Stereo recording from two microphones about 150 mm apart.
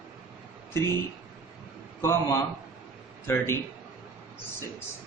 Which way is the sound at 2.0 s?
20° left (ahead or behind).